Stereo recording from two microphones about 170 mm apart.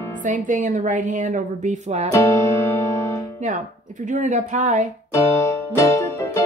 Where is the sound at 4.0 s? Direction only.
45° right (ahead or behind).